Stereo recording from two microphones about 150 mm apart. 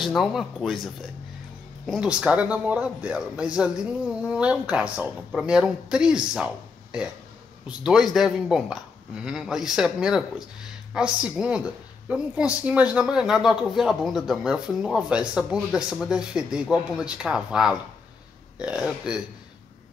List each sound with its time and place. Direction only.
0.0 s a woman's voice: centre (ahead or behind)